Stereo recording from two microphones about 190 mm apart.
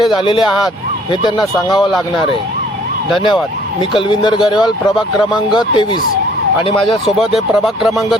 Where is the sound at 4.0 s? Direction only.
25° left (ahead or behind).